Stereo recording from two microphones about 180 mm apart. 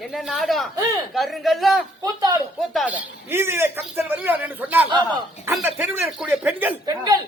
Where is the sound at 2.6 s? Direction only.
Centre (ahead or behind).